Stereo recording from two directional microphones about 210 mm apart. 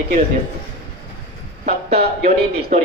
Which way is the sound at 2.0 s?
40° right (ahead or behind).